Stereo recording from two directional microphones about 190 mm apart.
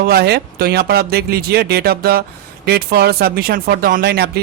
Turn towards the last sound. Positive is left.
turn(degrees=-55)  # may be behind; listen again after turning